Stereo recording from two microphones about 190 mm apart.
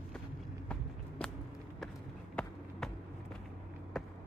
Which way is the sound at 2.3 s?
5° left (ahead or behind).